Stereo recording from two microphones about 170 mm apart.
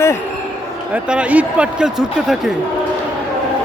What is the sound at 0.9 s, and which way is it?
Speech, 5° right (ahead or behind).